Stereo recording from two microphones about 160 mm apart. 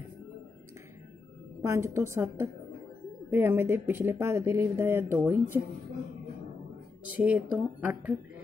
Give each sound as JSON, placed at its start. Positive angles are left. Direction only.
{"t": 1.6, "sound": "speech", "side_deg": -15}
{"t": 7.2, "sound": "speech", "side_deg": -10}